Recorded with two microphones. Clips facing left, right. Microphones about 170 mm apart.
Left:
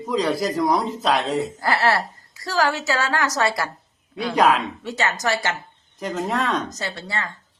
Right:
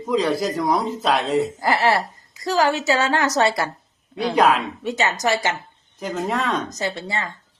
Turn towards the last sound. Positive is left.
turn(degrees=-20)  # may be behind; listen again after turning